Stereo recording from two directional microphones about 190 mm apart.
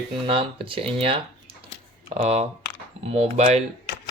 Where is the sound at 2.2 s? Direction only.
35° right (ahead or behind).